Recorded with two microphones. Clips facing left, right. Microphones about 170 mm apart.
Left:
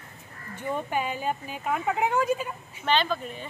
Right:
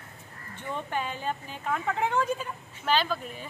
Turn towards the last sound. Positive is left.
turn(degrees=-5)  # may be behind; listen again after turning